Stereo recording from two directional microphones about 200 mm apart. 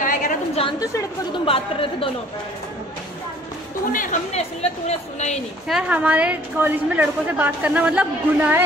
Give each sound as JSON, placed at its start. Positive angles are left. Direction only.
{"t": 0.0, "sound": "a sound", "side_deg": 40}
{"t": 0.6, "sound": "a woman's voice", "side_deg": 20}
{"t": 3.9, "sound": "speech", "side_deg": 35}
{"t": 5.7, "sound": "a woman's voice", "side_deg": -5}